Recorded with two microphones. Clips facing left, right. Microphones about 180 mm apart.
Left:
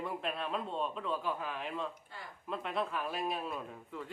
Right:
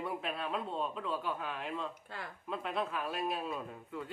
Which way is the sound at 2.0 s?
70° right (ahead or behind).